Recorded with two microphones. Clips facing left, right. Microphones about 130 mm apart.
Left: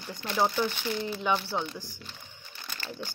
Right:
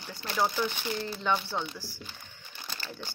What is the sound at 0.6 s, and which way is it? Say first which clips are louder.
Speech: left 2 dB; 5° right (ahead or behind).